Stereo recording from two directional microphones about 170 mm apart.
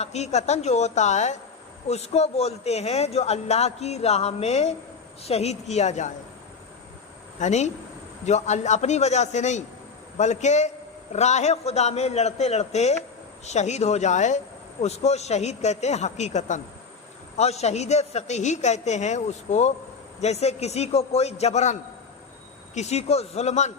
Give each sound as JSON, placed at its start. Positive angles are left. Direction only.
{"t": 0.0, "sound": "speech", "side_deg": 40}
{"t": 7.3, "sound": "a man's voice", "side_deg": 45}